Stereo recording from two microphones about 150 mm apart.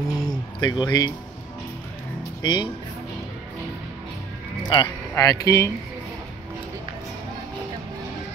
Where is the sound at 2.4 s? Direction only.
30° left (ahead or behind).